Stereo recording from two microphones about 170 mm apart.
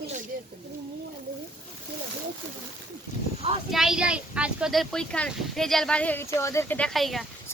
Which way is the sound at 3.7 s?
5° right (ahead or behind).